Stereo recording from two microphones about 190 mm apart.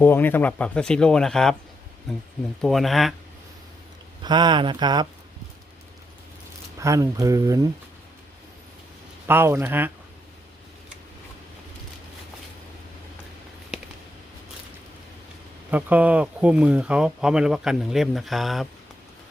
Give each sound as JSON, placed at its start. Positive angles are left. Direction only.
{"t": 0.0, "sound": "speech", "side_deg": 10}
{"t": 2.6, "sound": "speech", "side_deg": 0}
{"t": 4.2, "sound": "speech", "side_deg": -25}
{"t": 6.7, "sound": "speech", "side_deg": -15}
{"t": 9.2, "sound": "speech", "side_deg": -10}
{"t": 15.7, "sound": "speech", "side_deg": -10}